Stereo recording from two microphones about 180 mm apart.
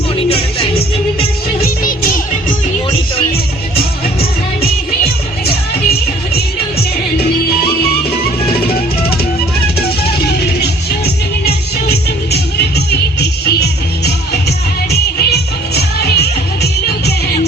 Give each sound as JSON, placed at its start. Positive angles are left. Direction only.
{"t": 0.2, "sound": "music", "side_deg": 30}
{"t": 1.6, "sound": "music", "side_deg": 50}
{"t": 3.8, "sound": "music", "side_deg": 60}
{"t": 8.4, "sound": "music", "side_deg": 55}
{"t": 11.4, "sound": "music", "side_deg": 60}